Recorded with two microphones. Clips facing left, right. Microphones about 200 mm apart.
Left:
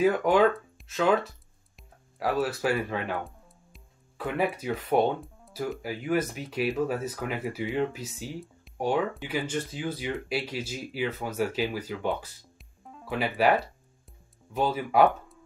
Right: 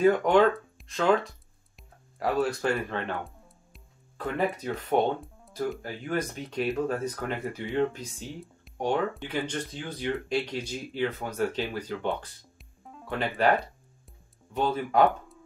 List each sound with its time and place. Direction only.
0.0 s speech: 5° left (ahead or behind)